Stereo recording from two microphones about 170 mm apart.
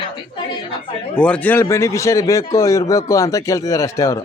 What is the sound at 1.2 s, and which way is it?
Speech, 5° left (ahead or behind).